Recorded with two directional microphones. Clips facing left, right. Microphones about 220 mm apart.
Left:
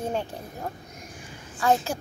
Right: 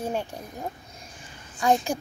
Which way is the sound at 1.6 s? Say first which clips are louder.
Even; 15° right (ahead or behind).